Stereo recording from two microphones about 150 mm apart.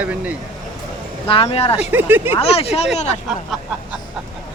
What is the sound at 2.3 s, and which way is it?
Speech, 40° left (ahead or behind).